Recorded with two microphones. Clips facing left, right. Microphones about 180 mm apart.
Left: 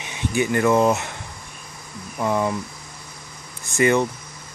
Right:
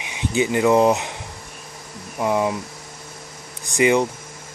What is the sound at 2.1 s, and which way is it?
Speech, 15° right (ahead or behind).